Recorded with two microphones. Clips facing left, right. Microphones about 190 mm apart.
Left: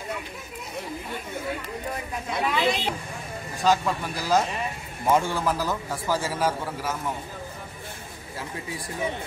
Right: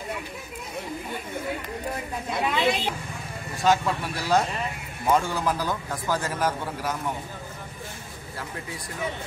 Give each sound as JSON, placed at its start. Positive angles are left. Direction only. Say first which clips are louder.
{"t": 2.3, "sound": "a man's voice", "louder": "even", "side_deg": 0}